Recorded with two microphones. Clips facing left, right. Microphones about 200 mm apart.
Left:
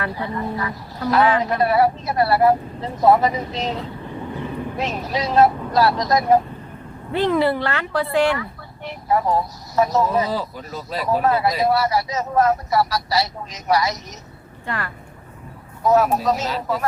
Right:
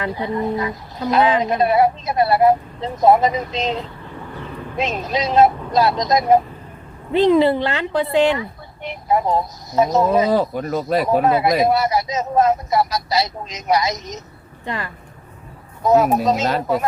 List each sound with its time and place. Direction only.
0.0 s speech: 20° right (ahead or behind)
10.3 s speech: 60° right (ahead or behind)
11.2 s speech: 20° right (ahead or behind)